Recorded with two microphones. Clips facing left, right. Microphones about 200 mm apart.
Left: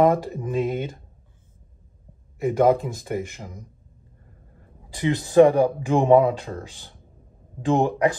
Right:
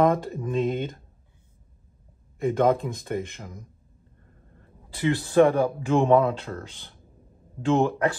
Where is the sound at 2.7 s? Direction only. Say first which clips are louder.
Left 3 dB; centre (ahead or behind).